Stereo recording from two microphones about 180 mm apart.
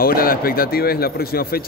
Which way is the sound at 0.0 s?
55° left (ahead or behind).